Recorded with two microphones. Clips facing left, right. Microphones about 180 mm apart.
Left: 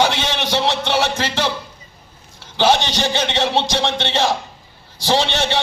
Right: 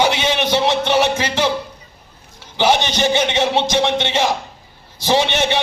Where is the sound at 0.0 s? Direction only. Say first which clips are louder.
Right 2 dB; 15° right (ahead or behind).